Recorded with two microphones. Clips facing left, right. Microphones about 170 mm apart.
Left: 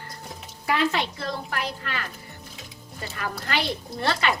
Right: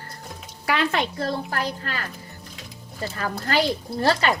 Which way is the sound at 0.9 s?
50° right (ahead or behind).